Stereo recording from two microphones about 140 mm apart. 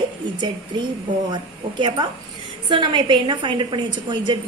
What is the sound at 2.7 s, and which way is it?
A woman's voice, 35° right (ahead or behind).